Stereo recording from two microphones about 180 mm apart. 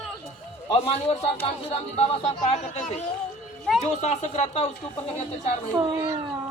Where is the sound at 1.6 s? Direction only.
35° left (ahead or behind).